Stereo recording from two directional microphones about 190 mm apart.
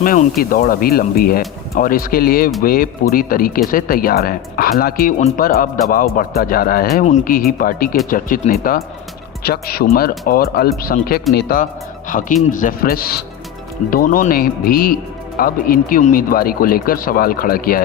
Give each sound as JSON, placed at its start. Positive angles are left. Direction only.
{"t": 0.0, "sound": "speech", "side_deg": 50}